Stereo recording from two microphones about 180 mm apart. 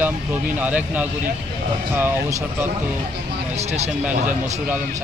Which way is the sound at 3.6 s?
40° right (ahead or behind).